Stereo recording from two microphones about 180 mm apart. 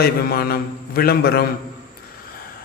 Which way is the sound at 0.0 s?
60° left (ahead or behind).